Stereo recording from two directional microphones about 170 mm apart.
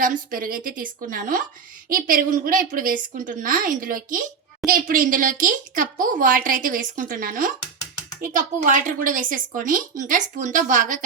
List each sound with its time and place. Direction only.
0.0 s a woman's voice: 55° right (ahead or behind)